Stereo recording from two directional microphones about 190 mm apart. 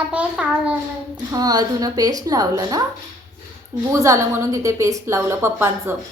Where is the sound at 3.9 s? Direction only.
15° right (ahead or behind).